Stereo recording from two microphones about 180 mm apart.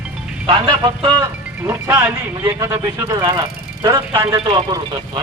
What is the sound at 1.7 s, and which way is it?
Speech, 10° right (ahead or behind).